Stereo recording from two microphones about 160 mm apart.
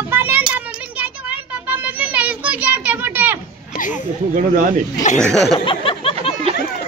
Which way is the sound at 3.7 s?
65° left (ahead or behind).